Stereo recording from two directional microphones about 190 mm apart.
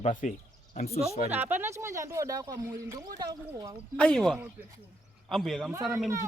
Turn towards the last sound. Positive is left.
turn(degrees=0)  # may be behind; listen again after turning